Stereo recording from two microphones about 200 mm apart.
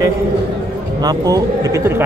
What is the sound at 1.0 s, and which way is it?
A man's voice, 20° right (ahead or behind).